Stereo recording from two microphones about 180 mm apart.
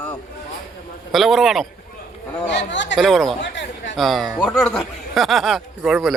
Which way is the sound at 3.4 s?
75° left (ahead or behind).